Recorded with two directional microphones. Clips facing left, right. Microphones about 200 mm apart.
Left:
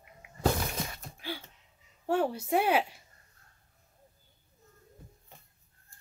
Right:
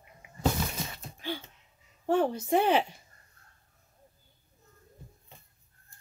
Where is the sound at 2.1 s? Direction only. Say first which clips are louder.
Right 2 dB; 10° left (ahead or behind).